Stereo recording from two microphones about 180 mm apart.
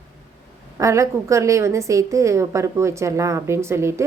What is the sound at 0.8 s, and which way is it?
A woman's voice, 15° right (ahead or behind).